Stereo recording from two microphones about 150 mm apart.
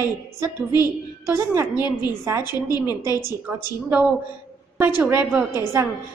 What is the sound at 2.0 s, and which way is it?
Speech, 15° right (ahead or behind).